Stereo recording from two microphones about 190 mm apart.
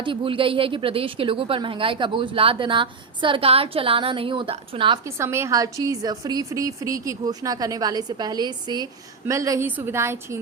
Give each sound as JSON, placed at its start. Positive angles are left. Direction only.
{"t": 0.0, "sound": "a woman's voice", "side_deg": -25}
{"t": 5.0, "sound": "a woman's voice", "side_deg": -15}